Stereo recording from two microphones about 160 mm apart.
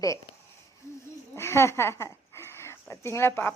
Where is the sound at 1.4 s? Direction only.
15° left (ahead or behind).